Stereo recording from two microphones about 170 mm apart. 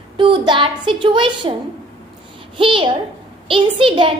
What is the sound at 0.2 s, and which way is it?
A woman's voice, 30° right (ahead or behind).